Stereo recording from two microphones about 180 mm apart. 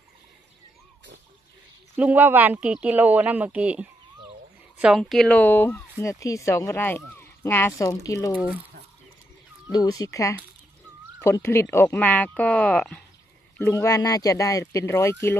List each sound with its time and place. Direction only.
2.0 s speech: 10° right (ahead or behind); by 8.3 s 20° left (ahead or behind)
9.7 s speech: 20° left (ahead or behind); by 13.0 s 5° left (ahead or behind)
13.6 s speech: 15° left (ahead or behind)